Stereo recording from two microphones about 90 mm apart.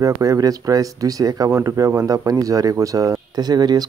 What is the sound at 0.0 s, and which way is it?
Speech, 40° right (ahead or behind).